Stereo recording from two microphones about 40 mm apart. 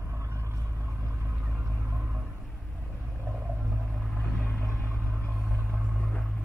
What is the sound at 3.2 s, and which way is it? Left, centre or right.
Whale vocalization, right.